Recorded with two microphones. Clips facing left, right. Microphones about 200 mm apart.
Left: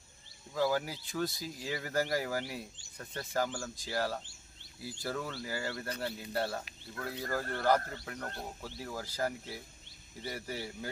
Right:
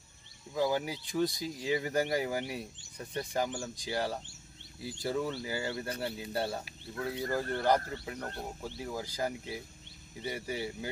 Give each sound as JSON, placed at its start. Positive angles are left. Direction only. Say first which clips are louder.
{"t": 0.6, "sound": "speech", "louder": "right 1 dB", "side_deg": -20}